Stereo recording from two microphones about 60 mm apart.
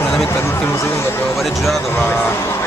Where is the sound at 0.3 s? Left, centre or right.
Left.